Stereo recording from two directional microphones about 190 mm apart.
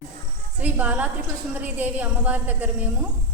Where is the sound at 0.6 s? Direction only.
10° right (ahead or behind).